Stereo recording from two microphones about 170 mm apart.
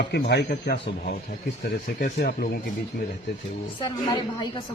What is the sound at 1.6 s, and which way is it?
Speech, 60° left (ahead or behind).